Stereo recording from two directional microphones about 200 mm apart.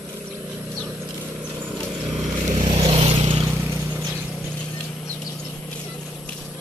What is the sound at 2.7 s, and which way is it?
Vehicle, 30° right (ahead or behind).